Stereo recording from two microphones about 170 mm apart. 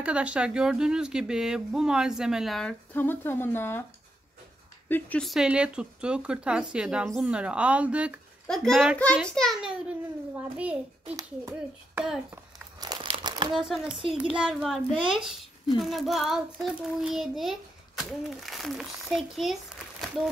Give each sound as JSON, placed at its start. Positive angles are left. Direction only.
{"t": 0.0, "sound": "child singing", "side_deg": -5}
{"t": 4.8, "sound": "speech", "side_deg": 10}
{"t": 5.2, "sound": "child singing", "side_deg": 0}
{"t": 10.6, "sound": "a child's voice", "side_deg": -5}
{"t": 12.8, "sound": "crumpling", "side_deg": -25}
{"t": 13.5, "sound": "child singing", "side_deg": 0}